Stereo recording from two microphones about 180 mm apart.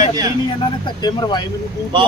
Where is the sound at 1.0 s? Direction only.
25° left (ahead or behind).